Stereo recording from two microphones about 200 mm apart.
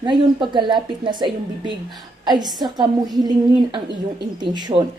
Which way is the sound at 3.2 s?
20° right (ahead or behind).